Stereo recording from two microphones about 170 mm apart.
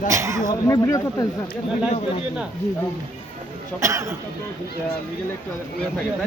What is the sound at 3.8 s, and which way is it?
Speech, 15° right (ahead or behind).